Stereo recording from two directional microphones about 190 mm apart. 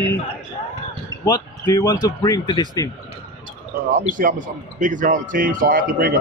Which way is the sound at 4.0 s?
45° right (ahead or behind).